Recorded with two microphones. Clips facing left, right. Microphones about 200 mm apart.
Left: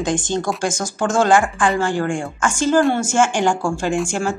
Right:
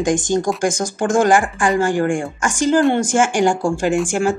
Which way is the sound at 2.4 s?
15° right (ahead or behind).